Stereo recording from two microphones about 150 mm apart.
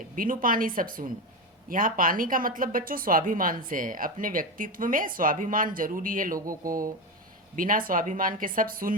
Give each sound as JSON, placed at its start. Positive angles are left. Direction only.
{"t": 0.2, "sound": "a woman's voice", "side_deg": -65}
{"t": 7.5, "sound": "speech", "side_deg": -65}